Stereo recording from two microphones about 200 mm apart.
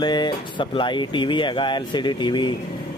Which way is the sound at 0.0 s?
20° left (ahead or behind).